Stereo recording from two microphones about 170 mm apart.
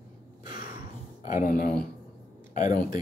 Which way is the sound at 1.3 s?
50° left (ahead or behind).